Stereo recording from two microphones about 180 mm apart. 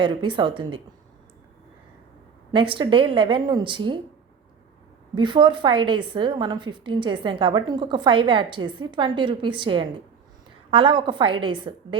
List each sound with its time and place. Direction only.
0.0 s a woman's voice: 25° right (ahead or behind)
2.5 s a woman's voice: 25° right (ahead or behind)
5.1 s a woman's voice: 25° right (ahead or behind)